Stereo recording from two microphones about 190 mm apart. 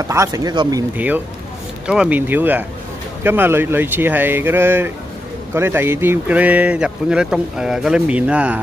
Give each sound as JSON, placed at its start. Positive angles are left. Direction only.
{"t": 0.1, "sound": "speech", "side_deg": -15}
{"t": 0.9, "sound": "speech", "side_deg": -10}